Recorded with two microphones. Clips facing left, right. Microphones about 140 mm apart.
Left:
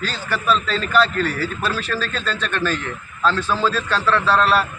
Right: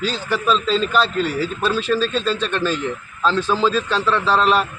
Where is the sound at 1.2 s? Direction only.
15° right (ahead or behind).